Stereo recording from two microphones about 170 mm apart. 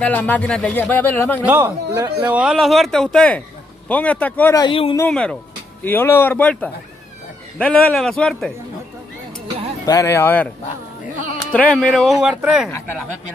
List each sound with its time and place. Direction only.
0.0 s speech: 10° left (ahead or behind)
1.4 s a man's voice: 10° right (ahead or behind); by 4.6 s 10° left (ahead or behind)
4.6 s speech: 30° left (ahead or behind)
5.1 s a man's voice: 5° left (ahead or behind)
9.8 s speech: 15° left (ahead or behind)
11.5 s a man's voice: 5° left (ahead or behind)
12.7 s speech: 15° left (ahead or behind)